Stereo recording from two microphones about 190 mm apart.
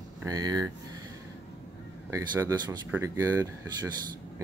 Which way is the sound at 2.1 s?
15° right (ahead or behind).